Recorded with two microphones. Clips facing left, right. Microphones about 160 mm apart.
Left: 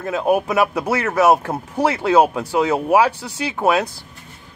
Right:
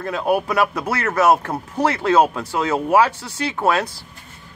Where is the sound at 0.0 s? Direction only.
5° left (ahead or behind).